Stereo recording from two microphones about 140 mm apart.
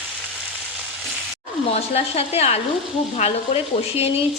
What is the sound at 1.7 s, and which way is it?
Speech, 45° left (ahead or behind).